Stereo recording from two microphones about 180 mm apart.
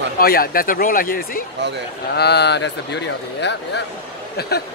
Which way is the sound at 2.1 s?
65° left (ahead or behind).